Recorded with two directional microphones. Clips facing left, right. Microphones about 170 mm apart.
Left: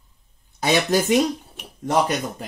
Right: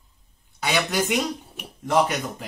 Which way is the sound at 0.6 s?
40° left (ahead or behind).